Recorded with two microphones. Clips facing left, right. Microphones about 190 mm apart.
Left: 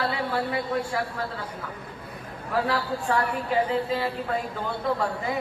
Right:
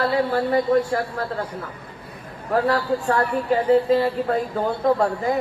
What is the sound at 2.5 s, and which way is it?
A woman's voice, 45° right (ahead or behind).